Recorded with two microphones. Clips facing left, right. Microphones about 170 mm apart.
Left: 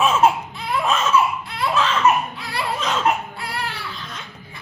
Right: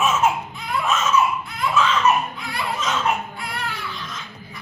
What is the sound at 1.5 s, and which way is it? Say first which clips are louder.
Laughter: left 1 dB; 35° left (ahead or behind).